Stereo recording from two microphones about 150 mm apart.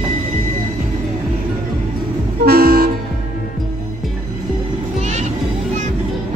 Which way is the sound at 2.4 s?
90° right.